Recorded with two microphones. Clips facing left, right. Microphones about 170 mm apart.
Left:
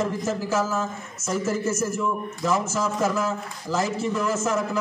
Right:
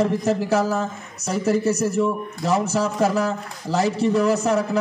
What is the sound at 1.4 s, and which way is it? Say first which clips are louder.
A man's voice: right 7 dB; 35° right (ahead or behind).